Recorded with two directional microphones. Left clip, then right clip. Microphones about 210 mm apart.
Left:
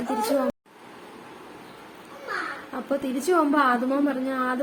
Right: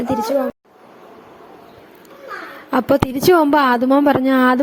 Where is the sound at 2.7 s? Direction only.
45° right (ahead or behind).